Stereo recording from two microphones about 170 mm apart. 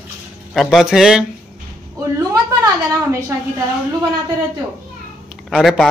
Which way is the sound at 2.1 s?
15° right (ahead or behind).